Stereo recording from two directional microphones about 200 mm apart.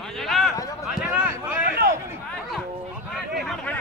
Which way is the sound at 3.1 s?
Centre (ahead or behind).